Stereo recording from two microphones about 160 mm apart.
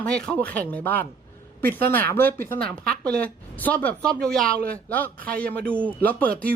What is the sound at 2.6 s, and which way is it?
Speech, 65° right (ahead or behind).